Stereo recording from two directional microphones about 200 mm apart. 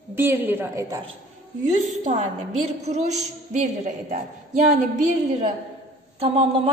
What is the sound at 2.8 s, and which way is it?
A woman's voice, 35° right (ahead or behind).